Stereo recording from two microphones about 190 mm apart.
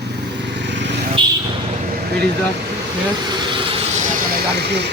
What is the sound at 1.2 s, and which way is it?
Vehicle, 25° right (ahead or behind).